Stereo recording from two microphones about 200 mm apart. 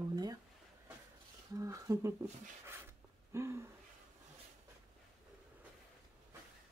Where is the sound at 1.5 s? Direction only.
15° right (ahead or behind).